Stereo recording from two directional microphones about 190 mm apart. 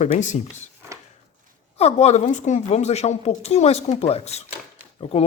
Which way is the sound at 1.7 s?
35° left (ahead or behind).